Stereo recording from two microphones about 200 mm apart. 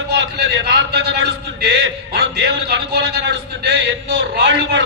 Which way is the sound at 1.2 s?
60° right (ahead or behind).